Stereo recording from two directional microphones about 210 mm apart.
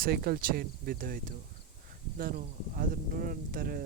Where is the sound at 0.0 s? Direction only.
45° right (ahead or behind).